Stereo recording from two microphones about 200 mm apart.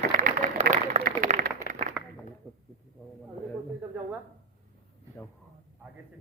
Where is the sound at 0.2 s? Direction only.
45° right (ahead or behind).